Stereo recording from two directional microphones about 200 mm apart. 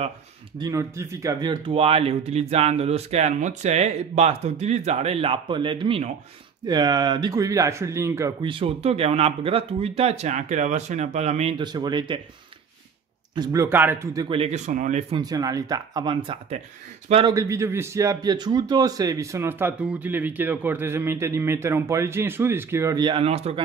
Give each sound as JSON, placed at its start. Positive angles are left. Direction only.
{"t": 0.6, "sound": "speech", "side_deg": -15}
{"t": 13.3, "sound": "speech", "side_deg": -20}
{"t": 15.1, "sound": "a man's voice", "side_deg": -20}